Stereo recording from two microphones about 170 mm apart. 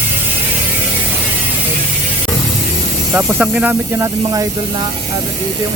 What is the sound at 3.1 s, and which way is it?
Speech, 10° right (ahead or behind).